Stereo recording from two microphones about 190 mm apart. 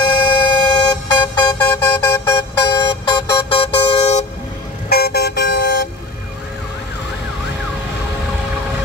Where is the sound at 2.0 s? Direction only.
20° left (ahead or behind); by 4.3 s 35° left (ahead or behind).